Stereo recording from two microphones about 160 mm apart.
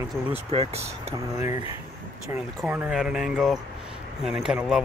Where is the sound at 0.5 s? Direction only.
40° right (ahead or behind).